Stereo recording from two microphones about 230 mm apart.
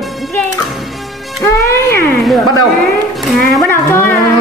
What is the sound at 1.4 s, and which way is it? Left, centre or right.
Music, centre.